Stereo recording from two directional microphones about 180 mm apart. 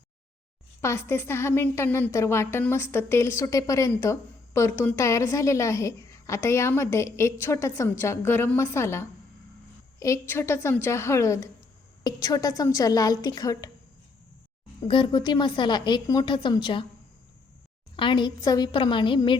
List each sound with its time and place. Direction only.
0.8 s a woman's voice: 15° left (ahead or behind)
14.8 s a woman's voice: 25° left (ahead or behind)
17.9 s a woman's voice: 25° left (ahead or behind)